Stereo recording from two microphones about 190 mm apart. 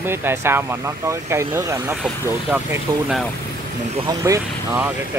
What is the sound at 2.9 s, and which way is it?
Speech, 25° right (ahead or behind).